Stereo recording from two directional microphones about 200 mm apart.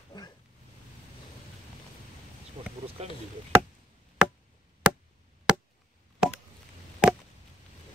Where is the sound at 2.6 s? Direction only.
25° right (ahead or behind).